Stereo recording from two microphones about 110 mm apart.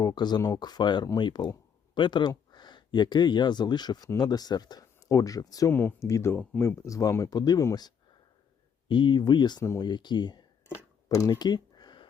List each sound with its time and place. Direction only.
0.0 s speech: 40° left (ahead or behind)
5.7 s speech: 20° left (ahead or behind)
8.9 s speech: 45° left (ahead or behind)
11.1 s a sound: 35° left (ahead or behind)